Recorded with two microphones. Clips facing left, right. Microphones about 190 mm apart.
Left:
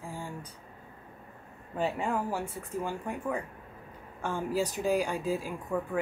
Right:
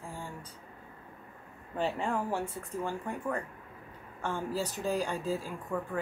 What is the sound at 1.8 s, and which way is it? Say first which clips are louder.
Speech: left 1 dB; 5° left (ahead or behind).